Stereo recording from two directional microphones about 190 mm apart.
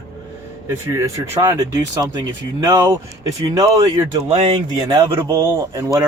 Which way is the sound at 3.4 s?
20° right (ahead or behind).